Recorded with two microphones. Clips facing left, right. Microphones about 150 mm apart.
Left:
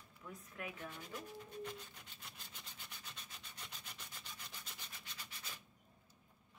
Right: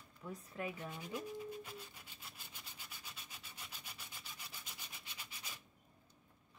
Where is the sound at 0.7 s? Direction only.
10° right (ahead or behind).